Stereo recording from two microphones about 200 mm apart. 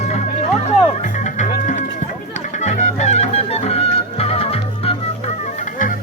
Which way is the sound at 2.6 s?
35° left (ahead or behind).